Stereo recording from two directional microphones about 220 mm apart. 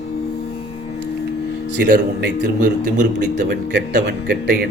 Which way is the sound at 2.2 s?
45° right (ahead or behind).